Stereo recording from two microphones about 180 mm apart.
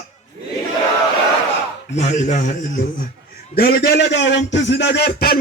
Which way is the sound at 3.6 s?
60° left (ahead or behind).